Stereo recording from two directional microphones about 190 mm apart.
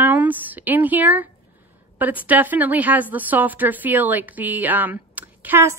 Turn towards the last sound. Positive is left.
turn(degrees=-10)  # may be behind; listen again after turning